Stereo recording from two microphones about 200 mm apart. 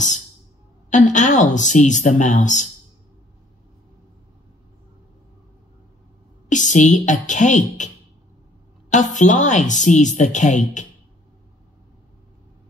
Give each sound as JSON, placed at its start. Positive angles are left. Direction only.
{"t": 0.8, "sound": "a woman's voice", "side_deg": 40}
{"t": 6.5, "sound": "a woman's voice", "side_deg": 40}
{"t": 8.9, "sound": "a woman's voice", "side_deg": 40}